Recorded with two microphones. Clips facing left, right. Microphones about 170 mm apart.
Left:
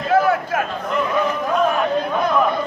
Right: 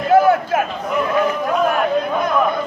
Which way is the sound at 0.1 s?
25° right (ahead or behind).